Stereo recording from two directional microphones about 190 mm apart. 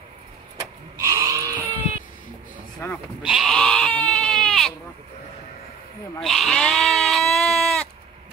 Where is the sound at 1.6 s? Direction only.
10° left (ahead or behind).